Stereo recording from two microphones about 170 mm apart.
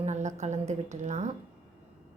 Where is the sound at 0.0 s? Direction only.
45° right (ahead or behind).